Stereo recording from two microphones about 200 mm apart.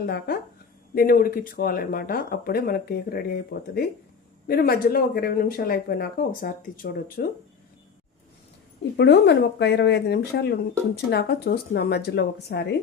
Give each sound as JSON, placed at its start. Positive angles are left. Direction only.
{"t": 0.0, "sound": "speech", "side_deg": 50}
{"t": 8.8, "sound": "speech", "side_deg": 60}